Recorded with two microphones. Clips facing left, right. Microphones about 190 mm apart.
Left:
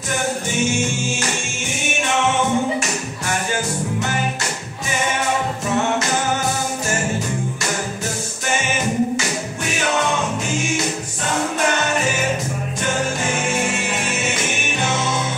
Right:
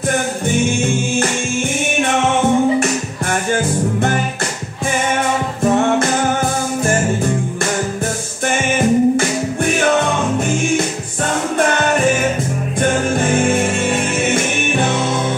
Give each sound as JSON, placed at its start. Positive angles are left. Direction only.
{"t": 8.7, "sound": "music", "side_deg": -55}
{"t": 12.8, "sound": "music", "side_deg": -55}